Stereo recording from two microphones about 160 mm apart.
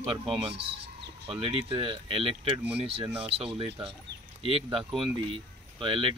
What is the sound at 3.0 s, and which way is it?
Speech, 10° right (ahead or behind).